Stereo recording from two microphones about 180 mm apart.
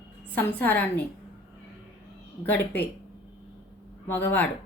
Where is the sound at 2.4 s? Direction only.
10° left (ahead or behind).